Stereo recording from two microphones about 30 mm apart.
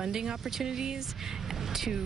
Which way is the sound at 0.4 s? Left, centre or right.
Centre.